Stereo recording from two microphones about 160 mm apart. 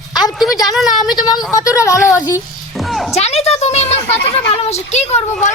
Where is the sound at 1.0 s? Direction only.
25° left (ahead or behind).